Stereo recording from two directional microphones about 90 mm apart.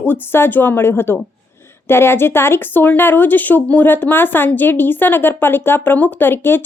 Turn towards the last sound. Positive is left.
turn(degrees=25)  # may be behind; listen again after turning